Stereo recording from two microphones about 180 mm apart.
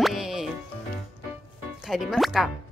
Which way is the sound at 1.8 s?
Centre (ahead or behind).